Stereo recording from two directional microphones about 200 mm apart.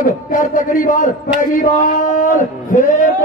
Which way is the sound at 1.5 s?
40° left (ahead or behind).